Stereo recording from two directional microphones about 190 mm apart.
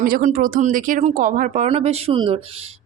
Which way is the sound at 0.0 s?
45° right (ahead or behind).